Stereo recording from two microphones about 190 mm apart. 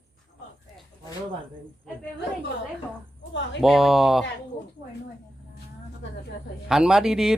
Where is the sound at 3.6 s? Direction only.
Centre (ahead or behind).